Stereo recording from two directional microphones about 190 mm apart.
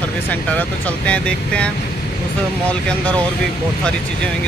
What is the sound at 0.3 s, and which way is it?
Speech, 5° left (ahead or behind).